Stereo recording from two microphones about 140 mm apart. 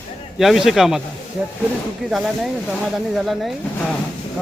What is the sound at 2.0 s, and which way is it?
Speech, 5° right (ahead or behind).